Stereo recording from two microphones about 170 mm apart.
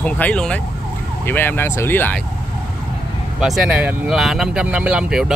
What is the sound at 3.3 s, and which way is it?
Speech, centre (ahead or behind).